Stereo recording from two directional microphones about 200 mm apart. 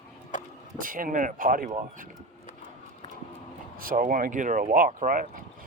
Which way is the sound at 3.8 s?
45° right (ahead or behind).